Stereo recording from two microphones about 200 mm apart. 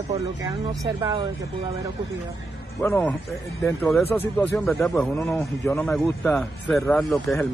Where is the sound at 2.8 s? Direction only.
10° left (ahead or behind).